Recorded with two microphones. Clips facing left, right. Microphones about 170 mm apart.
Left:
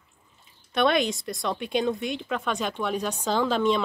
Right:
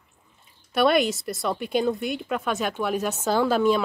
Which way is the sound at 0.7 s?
5° right (ahead or behind).